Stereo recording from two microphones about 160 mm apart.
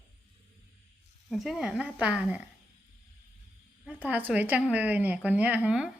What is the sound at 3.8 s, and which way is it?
A woman's voice, 10° right (ahead or behind).